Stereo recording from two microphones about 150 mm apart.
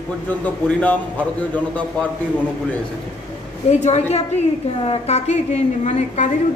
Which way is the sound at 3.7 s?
45° left (ahead or behind).